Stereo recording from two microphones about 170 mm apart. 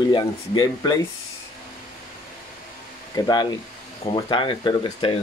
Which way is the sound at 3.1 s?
25° left (ahead or behind).